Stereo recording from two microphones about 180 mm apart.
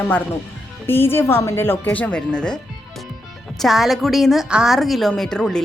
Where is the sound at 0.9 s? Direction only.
10° left (ahead or behind).